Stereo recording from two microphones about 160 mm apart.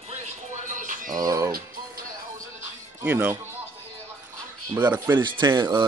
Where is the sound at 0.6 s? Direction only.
55° right (ahead or behind).